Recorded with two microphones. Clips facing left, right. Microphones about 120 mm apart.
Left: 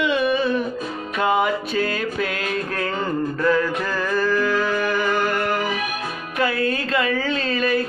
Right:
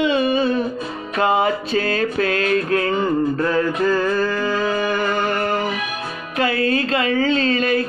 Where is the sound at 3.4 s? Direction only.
35° right (ahead or behind).